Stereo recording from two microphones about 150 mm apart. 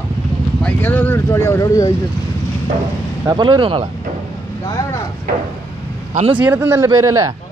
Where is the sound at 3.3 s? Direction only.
30° right (ahead or behind).